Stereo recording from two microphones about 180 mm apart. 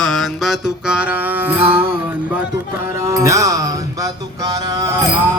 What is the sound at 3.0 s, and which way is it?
Music, 15° right (ahead or behind).